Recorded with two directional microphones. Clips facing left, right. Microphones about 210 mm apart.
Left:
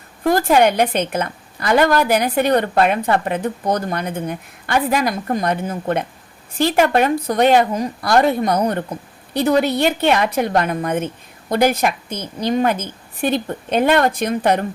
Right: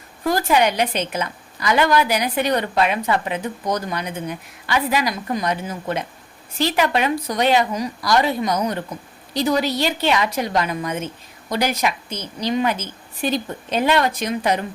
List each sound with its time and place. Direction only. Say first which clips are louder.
0.3 s a woman's voice: left 4 dB; 50° left (ahead or behind)